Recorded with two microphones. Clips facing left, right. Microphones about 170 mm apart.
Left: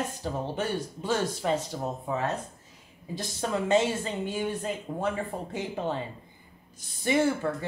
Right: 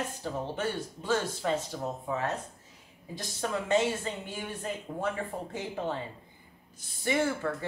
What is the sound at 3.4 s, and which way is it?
A woman's voice, 25° left (ahead or behind).